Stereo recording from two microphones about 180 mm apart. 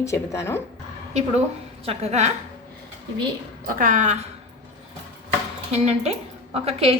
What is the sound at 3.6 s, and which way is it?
Speech, 50° right (ahead or behind).